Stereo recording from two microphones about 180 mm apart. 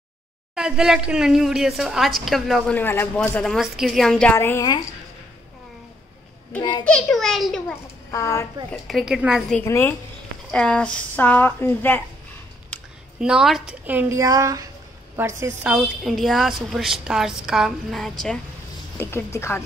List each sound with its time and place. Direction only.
0.6 s a woman's voice: 5° right (ahead or behind); by 4.8 s 20° left (ahead or behind)
6.8 s a woman's voice: 5° left (ahead or behind)
8.1 s a woman's voice: 15° left (ahead or behind)
8.8 s a woman's voice: centre (ahead or behind)
9.6 s a woman's voice: 10° left (ahead or behind)
13.2 s a woman's voice: 5° right (ahead or behind)
15.7 s a woman's voice: centre (ahead or behind)
18.9 s a woman's voice: 15° left (ahead or behind)